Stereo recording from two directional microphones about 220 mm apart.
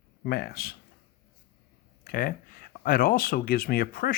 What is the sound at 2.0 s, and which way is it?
Speech, 40° left (ahead or behind).